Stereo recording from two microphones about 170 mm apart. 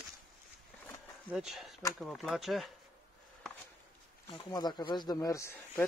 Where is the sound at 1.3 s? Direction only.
Centre (ahead or behind).